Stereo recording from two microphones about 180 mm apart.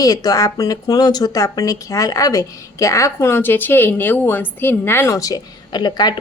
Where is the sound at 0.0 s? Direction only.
20° left (ahead or behind).